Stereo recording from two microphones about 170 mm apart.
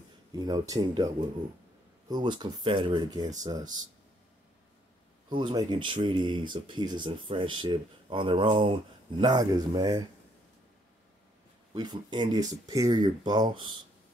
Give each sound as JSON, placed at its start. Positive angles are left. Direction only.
{"t": 0.3, "sound": "speech", "side_deg": -25}
{"t": 2.0, "sound": "speech", "side_deg": -25}
{"t": 5.3, "sound": "speech", "side_deg": -25}
{"t": 11.7, "sound": "speech", "side_deg": -25}